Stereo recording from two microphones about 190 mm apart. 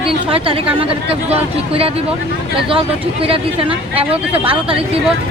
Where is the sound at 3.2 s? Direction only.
30° right (ahead or behind).